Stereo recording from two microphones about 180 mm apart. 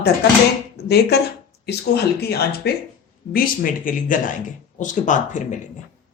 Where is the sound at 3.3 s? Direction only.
50° left (ahead or behind).